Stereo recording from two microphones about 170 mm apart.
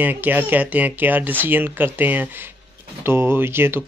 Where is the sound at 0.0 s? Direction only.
10° right (ahead or behind).